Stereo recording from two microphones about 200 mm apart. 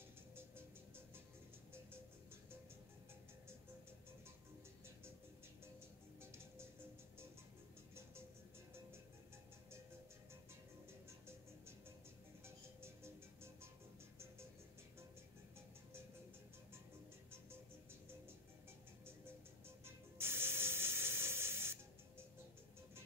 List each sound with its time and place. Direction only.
0.4 s music: 10° right (ahead or behind)
11.1 s music: 10° right (ahead or behind)
19.8 s music: 10° right (ahead or behind)